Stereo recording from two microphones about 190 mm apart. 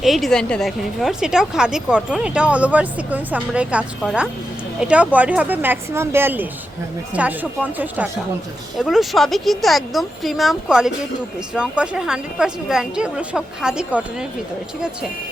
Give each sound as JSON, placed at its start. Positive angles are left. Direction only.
{"t": 0.0, "sound": "a woman's voice", "side_deg": 0}